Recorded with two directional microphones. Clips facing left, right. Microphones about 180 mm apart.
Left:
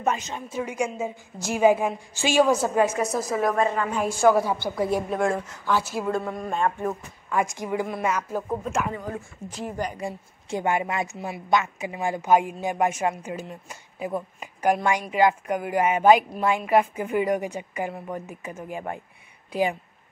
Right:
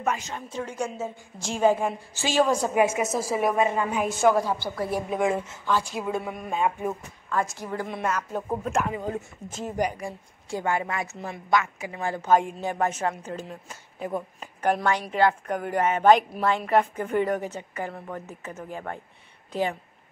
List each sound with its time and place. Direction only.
0.0 s a woman's voice: 25° left (ahead or behind)
0.5 s a woman's voice: 10° left (ahead or behind)
2.7 s a woman's voice: 10° right (ahead or behind)
3.6 s a woman's voice: 20° right (ahead or behind)
4.2 s a woman's voice: 10° left (ahead or behind)
5.1 s speech: 5° right (ahead or behind)
5.7 s a woman's voice: 5° left (ahead or behind)
7.5 s a woman's voice: 15° left (ahead or behind)
9.9 s a woman's voice: 20° left (ahead or behind)
11.1 s a woman's voice: 10° left (ahead or behind)
11.5 s a woman's voice: 20° left (ahead or behind)